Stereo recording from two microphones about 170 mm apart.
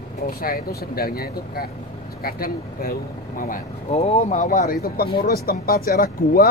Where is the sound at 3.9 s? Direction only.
40° left (ahead or behind).